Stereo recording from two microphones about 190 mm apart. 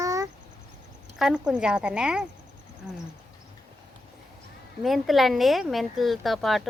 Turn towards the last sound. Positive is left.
turn(degrees=0)  # may be behind; listen again after turning